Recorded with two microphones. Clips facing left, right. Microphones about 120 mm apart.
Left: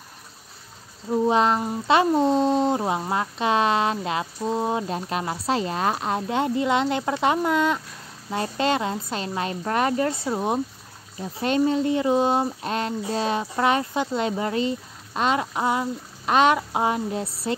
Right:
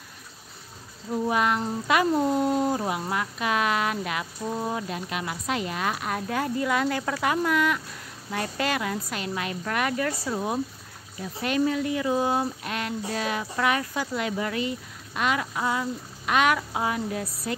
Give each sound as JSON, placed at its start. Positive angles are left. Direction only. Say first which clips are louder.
{"t": 1.1, "sound": "speech", "louder": "left 5 dB", "side_deg": 25}